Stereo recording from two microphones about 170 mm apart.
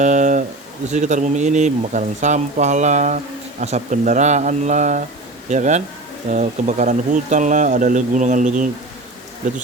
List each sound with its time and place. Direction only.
0.0 s speech: 45° right (ahead or behind)